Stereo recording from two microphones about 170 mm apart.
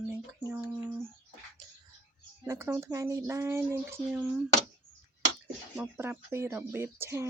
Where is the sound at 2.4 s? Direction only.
15° right (ahead or behind).